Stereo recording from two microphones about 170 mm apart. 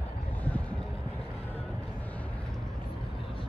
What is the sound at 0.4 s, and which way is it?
Vehicle, 10° left (ahead or behind).